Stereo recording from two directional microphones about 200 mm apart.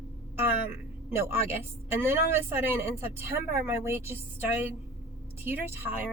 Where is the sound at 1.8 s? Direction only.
10° right (ahead or behind).